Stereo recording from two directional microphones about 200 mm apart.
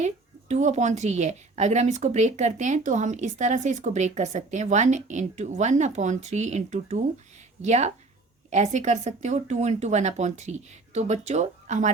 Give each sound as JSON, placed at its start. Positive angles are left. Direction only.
{"t": 0.0, "sound": "a woman's voice", "side_deg": -35}